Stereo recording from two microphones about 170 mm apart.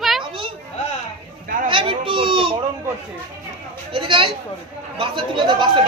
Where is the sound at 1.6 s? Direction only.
30° right (ahead or behind).